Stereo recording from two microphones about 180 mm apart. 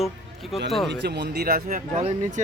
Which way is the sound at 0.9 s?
70° right (ahead or behind).